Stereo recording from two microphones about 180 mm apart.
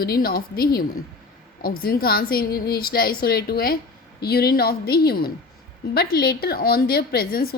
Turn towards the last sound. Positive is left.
turn(degrees=55)  # may be behind; listen again after turning